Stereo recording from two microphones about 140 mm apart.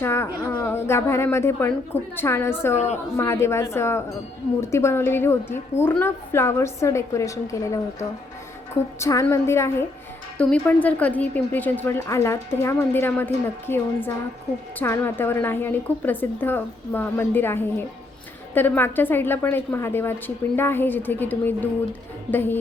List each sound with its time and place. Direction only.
0.0 s a woman's voice: 20° left (ahead or behind)
2.7 s a woman's voice: 55° left (ahead or behind)
3.2 s a woman's voice: 20° left (ahead or behind)
10.3 s a woman's voice: 10° left (ahead or behind)